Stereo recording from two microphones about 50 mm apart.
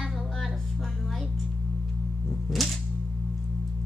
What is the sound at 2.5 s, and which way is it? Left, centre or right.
Music, centre.